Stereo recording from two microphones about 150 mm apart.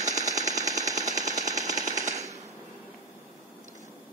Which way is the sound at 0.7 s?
25° right (ahead or behind).